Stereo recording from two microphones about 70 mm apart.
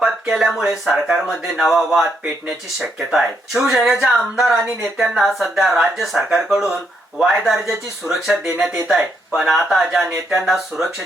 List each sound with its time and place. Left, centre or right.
0.0 s speech: centre
8.0 s speech: left
8.5 s speech: centre